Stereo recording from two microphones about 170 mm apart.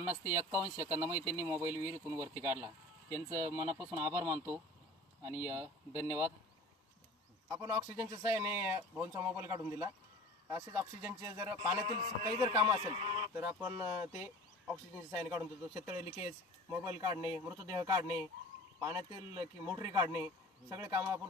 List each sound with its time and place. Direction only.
0.0 s speech: 15° right (ahead or behind)
7.4 s speech: 20° right (ahead or behind)
11.8 s speech: 30° right (ahead or behind)
13.3 s speech: 15° right (ahead or behind)